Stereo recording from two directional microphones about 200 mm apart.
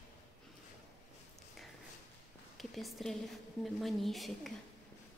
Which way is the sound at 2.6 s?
Centre (ahead or behind).